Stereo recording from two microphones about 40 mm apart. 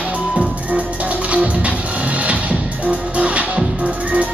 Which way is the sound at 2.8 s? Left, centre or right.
Right.